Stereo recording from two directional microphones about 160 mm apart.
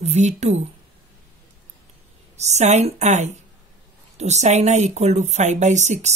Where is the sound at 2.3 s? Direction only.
45° right (ahead or behind).